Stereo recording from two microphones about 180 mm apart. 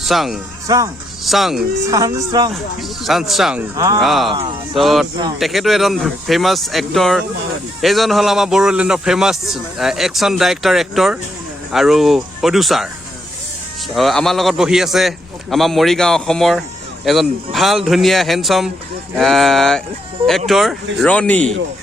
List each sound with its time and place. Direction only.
0.0 s speech: centre (ahead or behind)
0.7 s speech: 20° right (ahead or behind)
1.2 s speech: centre (ahead or behind)
1.9 s speech: 20° right (ahead or behind)
2.5 s speech: centre (ahead or behind)
3.8 s speech: 20° right (ahead or behind)
4.0 s speech: centre (ahead or behind)
13.9 s speech: centre (ahead or behind)